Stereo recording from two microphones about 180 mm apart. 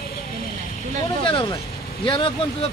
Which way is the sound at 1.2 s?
30° left (ahead or behind).